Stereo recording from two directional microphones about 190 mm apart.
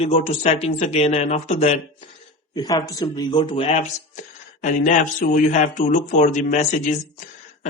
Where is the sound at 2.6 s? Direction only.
20° left (ahead or behind).